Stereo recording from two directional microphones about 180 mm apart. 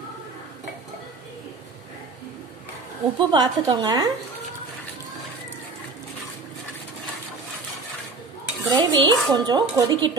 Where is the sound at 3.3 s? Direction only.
25° right (ahead or behind).